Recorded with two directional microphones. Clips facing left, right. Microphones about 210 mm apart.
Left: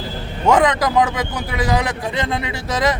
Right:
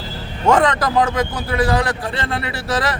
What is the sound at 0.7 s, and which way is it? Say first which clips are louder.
A man's voice: even; 15° left (ahead or behind).